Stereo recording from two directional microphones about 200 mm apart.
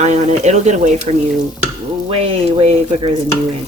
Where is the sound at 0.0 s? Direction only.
35° right (ahead or behind).